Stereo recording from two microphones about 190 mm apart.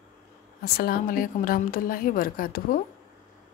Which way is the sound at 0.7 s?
50° left (ahead or behind).